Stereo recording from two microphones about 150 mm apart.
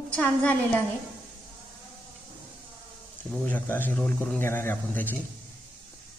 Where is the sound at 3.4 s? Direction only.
10° left (ahead or behind).